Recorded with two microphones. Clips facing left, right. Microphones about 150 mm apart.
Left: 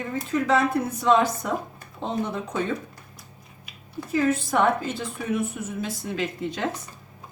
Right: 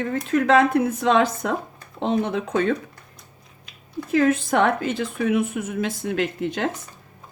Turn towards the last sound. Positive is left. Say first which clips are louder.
# right 3 dB
turn(degrees=-60)  # may be behind; listen again after turning